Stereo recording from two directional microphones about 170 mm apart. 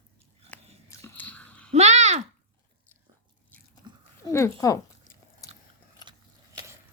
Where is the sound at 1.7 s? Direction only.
40° right (ahead or behind).